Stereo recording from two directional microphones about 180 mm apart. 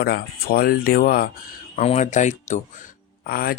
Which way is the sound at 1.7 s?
40° left (ahead or behind).